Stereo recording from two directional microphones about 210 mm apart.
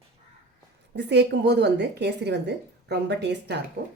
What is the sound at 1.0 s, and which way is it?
A woman's voice, 55° right (ahead or behind).